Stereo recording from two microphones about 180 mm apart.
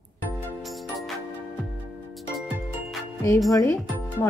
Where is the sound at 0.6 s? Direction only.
Centre (ahead or behind).